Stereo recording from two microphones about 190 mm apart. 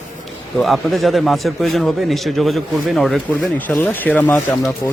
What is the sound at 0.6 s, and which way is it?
A man's voice, centre (ahead or behind).